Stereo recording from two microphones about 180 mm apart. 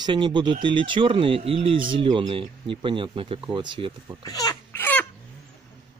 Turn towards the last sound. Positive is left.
turn(degrees=10)  # may be behind; listen again after turning